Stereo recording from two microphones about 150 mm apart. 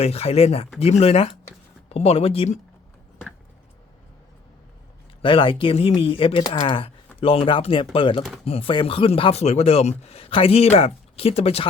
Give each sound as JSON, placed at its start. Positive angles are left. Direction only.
{"t": 0.0, "sound": "speech", "side_deg": 45}
{"t": 5.2, "sound": "speech", "side_deg": 35}